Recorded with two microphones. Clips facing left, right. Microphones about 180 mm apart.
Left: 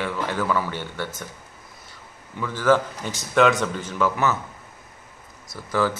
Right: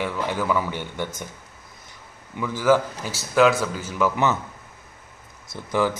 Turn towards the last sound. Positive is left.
turn(degrees=-20)  # may be behind; listen again after turning